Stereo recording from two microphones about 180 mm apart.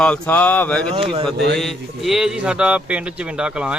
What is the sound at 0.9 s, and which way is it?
Speech, 30° right (ahead or behind).